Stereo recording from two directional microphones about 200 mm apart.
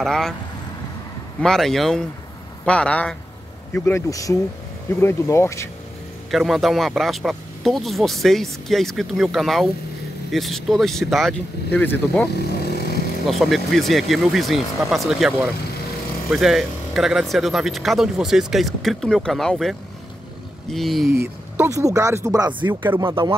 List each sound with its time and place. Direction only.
0.0 s speech: centre (ahead or behind)
1.4 s speech: centre (ahead or behind)
6.3 s speech: centre (ahead or behind)
13.3 s speech: centre (ahead or behind)
21.1 s speech: 10° right (ahead or behind)